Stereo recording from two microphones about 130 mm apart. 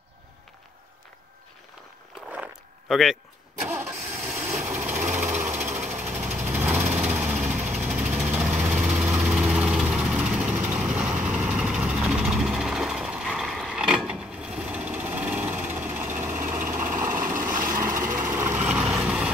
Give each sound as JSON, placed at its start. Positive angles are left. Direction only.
{"t": 2.2, "sound": "a sound", "side_deg": -10}
{"t": 2.9, "sound": "speech", "side_deg": 0}
{"t": 3.6, "sound": "engine starting", "side_deg": -10}
{"t": 5.6, "sound": "jackhammer", "side_deg": -5}
{"t": 6.4, "sound": "lawn mower", "side_deg": -15}
{"t": 7.6, "sound": "vehicle", "side_deg": -10}
{"t": 16.7, "sound": "vehicle", "side_deg": -70}
{"t": 17.0, "sound": "vehicle", "side_deg": -20}
{"t": 17.6, "sound": "vehicle", "side_deg": -90}
{"t": 17.9, "sound": "vehicle", "side_deg": -25}